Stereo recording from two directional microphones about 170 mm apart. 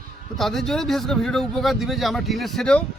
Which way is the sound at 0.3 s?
Centre (ahead or behind).